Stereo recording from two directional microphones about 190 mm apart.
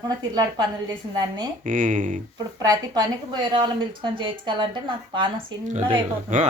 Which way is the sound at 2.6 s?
20° right (ahead or behind).